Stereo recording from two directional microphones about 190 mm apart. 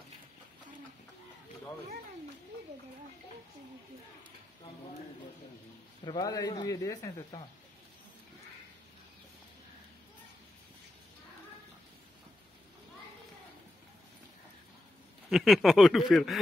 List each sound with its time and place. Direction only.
6.0 s speech: 20° left (ahead or behind)
15.2 s speech: centre (ahead or behind)